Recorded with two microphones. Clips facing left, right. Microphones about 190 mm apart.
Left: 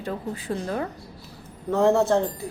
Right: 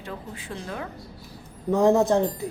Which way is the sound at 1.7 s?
15° right (ahead or behind).